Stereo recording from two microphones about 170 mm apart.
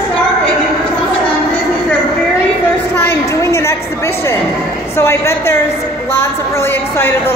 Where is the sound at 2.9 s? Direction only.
15° left (ahead or behind).